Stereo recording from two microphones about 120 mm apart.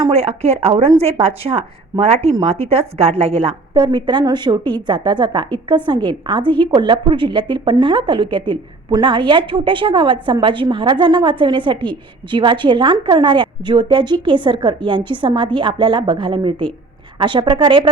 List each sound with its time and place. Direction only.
0.1 s a woman's voice: 60° right (ahead or behind)
3.8 s a woman's voice: 40° right (ahead or behind)